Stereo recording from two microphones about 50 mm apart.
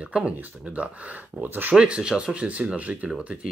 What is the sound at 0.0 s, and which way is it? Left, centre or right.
Speech, right.